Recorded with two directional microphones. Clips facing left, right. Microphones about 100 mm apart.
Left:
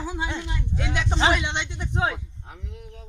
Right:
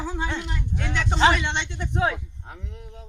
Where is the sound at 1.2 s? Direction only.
15° left (ahead or behind).